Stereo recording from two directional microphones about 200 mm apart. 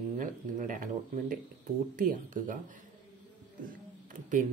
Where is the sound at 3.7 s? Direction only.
40° right (ahead or behind).